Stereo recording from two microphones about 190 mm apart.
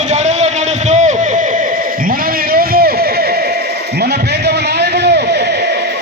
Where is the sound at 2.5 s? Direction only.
50° right (ahead or behind).